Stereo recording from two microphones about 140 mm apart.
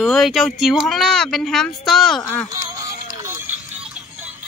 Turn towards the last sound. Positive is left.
turn(degrees=-20)  # may be behind; listen again after turning